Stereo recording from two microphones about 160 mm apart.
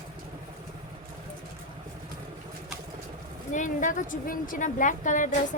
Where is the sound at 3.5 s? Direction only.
55° left (ahead or behind).